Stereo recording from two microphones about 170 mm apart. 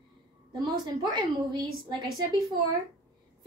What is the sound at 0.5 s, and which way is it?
A woman's voice, 25° right (ahead or behind).